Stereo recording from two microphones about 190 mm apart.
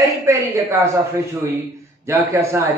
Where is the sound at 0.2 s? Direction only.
15° right (ahead or behind).